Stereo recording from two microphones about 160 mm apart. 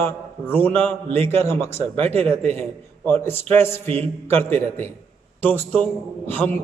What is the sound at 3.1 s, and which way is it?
A man's voice, 15° left (ahead or behind).